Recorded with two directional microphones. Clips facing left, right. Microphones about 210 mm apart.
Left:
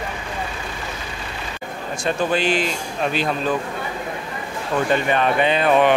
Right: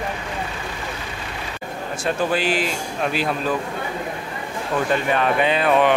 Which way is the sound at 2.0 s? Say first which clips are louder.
Left 1 dB; 5° right (ahead or behind).